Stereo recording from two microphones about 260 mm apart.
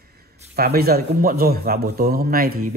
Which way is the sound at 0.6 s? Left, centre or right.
Right.